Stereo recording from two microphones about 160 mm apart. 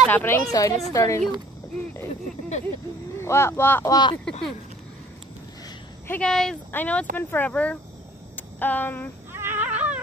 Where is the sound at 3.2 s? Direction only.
15° left (ahead or behind).